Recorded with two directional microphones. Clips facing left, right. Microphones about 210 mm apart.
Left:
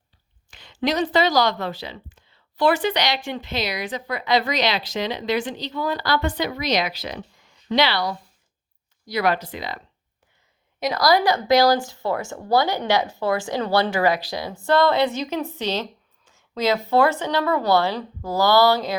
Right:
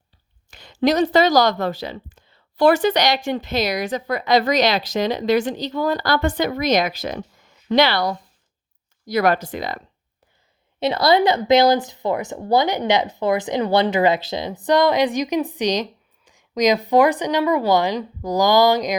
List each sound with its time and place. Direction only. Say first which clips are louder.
0.5 s speech: right 5 dB; 40° right (ahead or behind)
10.8 s speech: right 3 dB; 25° right (ahead or behind)